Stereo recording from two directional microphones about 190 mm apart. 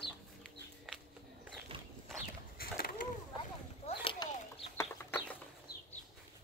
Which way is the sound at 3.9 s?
30° left (ahead or behind).